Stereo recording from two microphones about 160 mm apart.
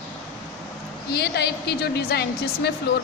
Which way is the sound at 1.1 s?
90° left.